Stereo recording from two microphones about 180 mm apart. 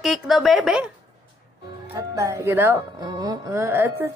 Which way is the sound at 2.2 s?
15° right (ahead or behind).